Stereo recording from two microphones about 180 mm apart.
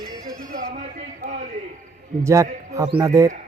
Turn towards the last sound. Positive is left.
turn(degrees=-20)  # may be behind; listen again after turning